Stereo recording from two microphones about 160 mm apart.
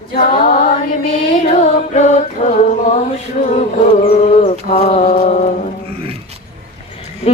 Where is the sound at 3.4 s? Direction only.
60° left (ahead or behind).